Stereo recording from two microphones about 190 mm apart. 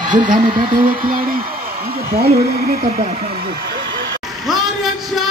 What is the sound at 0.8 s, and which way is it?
A woman's voice, 45° right (ahead or behind).